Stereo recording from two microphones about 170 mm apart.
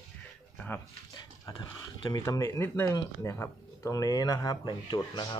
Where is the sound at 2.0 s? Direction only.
20° left (ahead or behind).